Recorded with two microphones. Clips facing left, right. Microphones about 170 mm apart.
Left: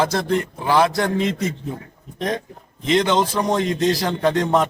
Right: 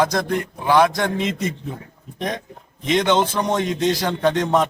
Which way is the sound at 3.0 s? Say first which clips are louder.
Even; 5° left (ahead or behind).